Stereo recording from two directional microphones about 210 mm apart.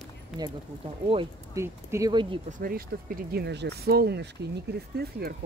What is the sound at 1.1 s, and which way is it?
Speech, 15° right (ahead or behind).